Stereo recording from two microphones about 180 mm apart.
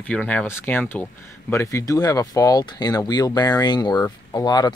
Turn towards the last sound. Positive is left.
turn(degrees=20)  # may be behind; listen again after turning